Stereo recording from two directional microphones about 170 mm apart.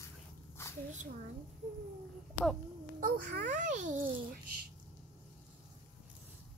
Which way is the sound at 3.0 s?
60° right (ahead or behind).